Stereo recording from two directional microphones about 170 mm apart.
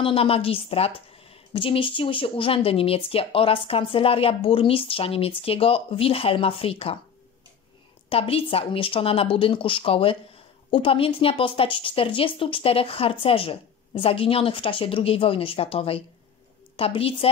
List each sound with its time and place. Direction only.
0.0 s a woman's voice: 35° left (ahead or behind)
8.1 s a woman's voice: 35° left (ahead or behind)